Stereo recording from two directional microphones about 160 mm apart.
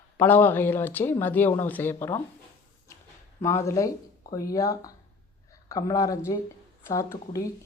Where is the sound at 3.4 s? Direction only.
20° left (ahead or behind).